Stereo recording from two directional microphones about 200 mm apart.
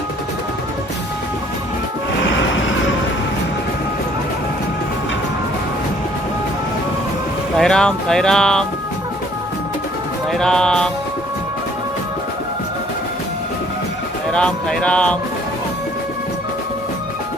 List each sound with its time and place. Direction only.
2.6 s music: 70° left (ahead or behind)
7.5 s speech: 5° left (ahead or behind)
10.3 s speech: 5° left (ahead or behind)
14.3 s speech: 5° left (ahead or behind)